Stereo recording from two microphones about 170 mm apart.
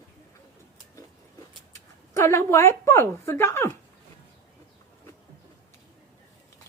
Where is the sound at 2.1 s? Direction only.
15° left (ahead or behind).